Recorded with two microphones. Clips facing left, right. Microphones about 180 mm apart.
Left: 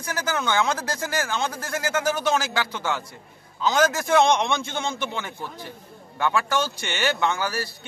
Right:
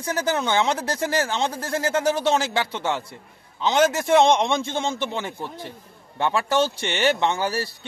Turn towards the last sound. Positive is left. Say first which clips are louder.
# right 3 dB
turn(degrees=-30)  # may be behind; listen again after turning